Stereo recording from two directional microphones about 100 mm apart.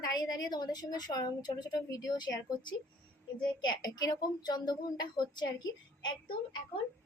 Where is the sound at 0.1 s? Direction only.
45° left (ahead or behind).